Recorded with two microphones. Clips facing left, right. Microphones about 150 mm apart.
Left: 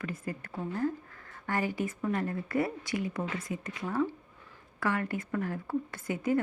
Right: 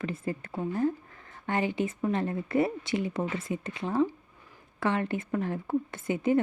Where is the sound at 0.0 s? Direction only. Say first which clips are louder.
Right 4 dB; 25° right (ahead or behind).